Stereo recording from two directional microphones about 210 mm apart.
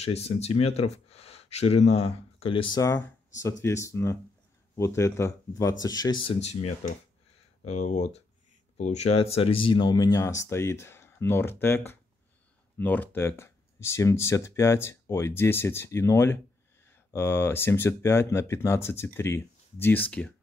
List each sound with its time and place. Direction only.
0.0 s speech: 30° left (ahead or behind); by 20.3 s 5° left (ahead or behind)